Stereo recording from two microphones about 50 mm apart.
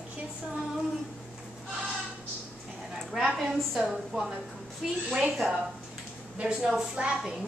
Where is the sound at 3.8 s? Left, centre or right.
Centre.